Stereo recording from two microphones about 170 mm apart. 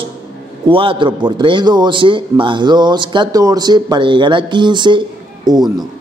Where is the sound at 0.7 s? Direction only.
30° right (ahead or behind).